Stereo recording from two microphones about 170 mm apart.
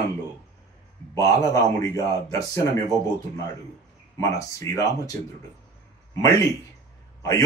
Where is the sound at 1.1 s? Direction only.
20° left (ahead or behind).